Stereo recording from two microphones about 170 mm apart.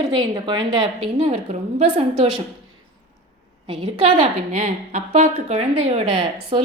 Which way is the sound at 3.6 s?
30° right (ahead or behind).